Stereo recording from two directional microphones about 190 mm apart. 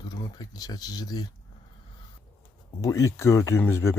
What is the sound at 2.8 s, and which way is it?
Speech, 15° left (ahead or behind).